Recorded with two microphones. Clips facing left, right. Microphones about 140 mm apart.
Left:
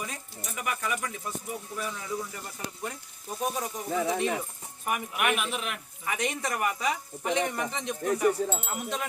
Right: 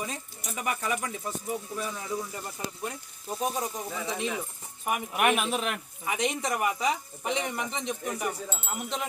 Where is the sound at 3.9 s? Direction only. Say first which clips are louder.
Left 5 dB; 55° left (ahead or behind).